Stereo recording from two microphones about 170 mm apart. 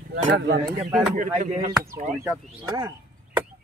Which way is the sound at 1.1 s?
45° right (ahead or behind).